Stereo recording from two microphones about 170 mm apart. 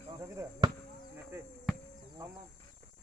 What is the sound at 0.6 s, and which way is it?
Basketball bounce, 25° right (ahead or behind).